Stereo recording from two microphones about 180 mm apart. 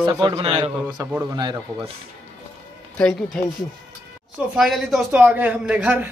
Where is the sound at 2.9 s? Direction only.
5° left (ahead or behind).